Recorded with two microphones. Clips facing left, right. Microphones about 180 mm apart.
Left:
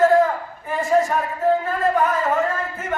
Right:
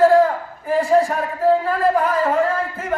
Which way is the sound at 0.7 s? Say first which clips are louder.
Right 3 dB; 35° right (ahead or behind).